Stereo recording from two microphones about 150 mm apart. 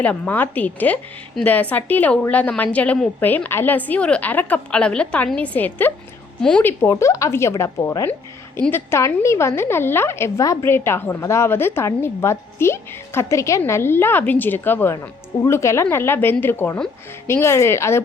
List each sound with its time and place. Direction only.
0.0 s a woman's voice: 10° left (ahead or behind)